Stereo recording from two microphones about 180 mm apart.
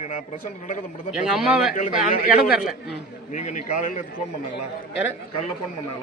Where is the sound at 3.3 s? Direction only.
40° left (ahead or behind).